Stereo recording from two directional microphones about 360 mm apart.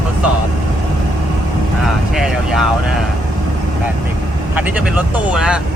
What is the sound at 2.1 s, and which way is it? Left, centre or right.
Speech, centre.